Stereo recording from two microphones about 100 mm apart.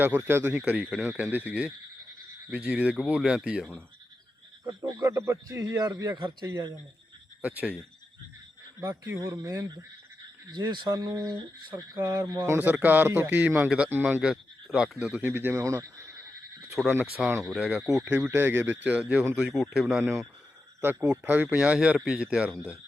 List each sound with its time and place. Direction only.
0.0 s speech: 20° right (ahead or behind)
4.9 s a sound: 45° right (ahead or behind)
5.1 s speech: 30° right (ahead or behind)
6.1 s speech: 50° right (ahead or behind)
6.5 s speech: 35° right (ahead or behind)
7.4 s speech: 15° right (ahead or behind)
8.8 s a man's voice: 25° right (ahead or behind)
10.5 s speech: 50° right (ahead or behind)
11.3 s a man's voice: 55° right (ahead or behind); by 13.4 s 20° right (ahead or behind)
13.6 s speech: 5° right (ahead or behind)
15.2 s a man's voice: 20° right (ahead or behind)
16.8 s speech: centre (ahead or behind)
18.3 s speech: 20° right (ahead or behind); by 20.0 s 5° right (ahead or behind)
21.2 s speech: 15° right (ahead or behind)